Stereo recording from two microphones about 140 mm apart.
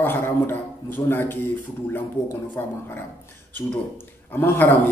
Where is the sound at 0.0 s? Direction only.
15° left (ahead or behind).